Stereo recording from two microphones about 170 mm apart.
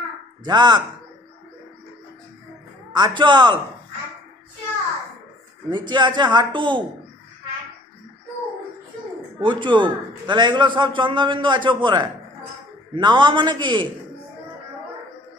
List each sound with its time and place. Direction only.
0.5 s a man's voice: 25° right (ahead or behind)
2.9 s a man's voice: 25° right (ahead or behind)
5.7 s a man's voice: 25° right (ahead or behind)
9.4 s a man's voice: 30° right (ahead or behind)